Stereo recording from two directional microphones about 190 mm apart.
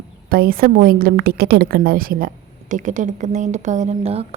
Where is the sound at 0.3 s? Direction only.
50° right (ahead or behind).